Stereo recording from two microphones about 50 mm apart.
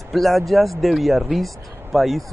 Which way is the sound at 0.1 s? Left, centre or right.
Centre.